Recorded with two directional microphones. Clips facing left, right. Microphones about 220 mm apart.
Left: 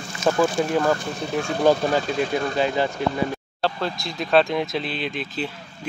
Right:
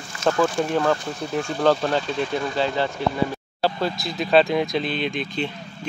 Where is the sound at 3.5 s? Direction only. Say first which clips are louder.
Right 3 dB; 5° right (ahead or behind).